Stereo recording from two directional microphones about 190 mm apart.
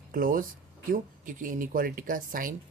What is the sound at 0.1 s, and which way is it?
Speech, 45° right (ahead or behind).